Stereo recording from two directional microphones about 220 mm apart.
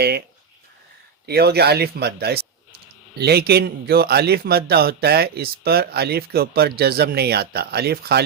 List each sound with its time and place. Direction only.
1.3 s a man's voice: 45° right (ahead or behind)